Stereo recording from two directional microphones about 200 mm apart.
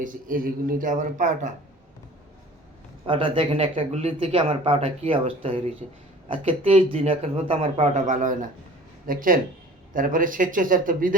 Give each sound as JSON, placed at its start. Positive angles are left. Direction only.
{"t": 0.0, "sound": "speech", "side_deg": -45}
{"t": 3.1, "sound": "speech", "side_deg": -25}